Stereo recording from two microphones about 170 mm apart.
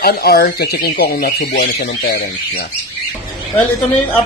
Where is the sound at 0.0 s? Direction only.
65° left (ahead or behind).